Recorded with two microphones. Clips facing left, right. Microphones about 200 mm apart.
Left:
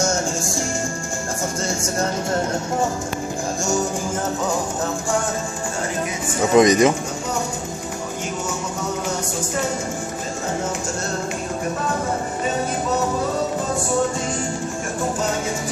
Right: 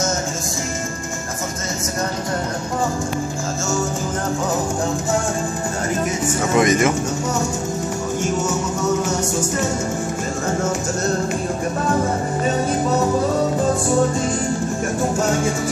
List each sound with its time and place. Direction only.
6.5 s speech: 20° left (ahead or behind)